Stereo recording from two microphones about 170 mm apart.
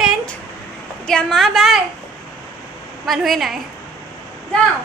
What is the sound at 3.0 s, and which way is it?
Speech, centre (ahead or behind).